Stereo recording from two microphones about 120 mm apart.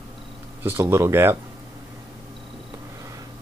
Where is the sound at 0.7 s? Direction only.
20° right (ahead or behind).